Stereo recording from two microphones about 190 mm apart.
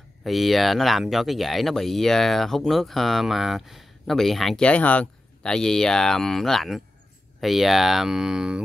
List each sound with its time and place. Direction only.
0.2 s speech: centre (ahead or behind)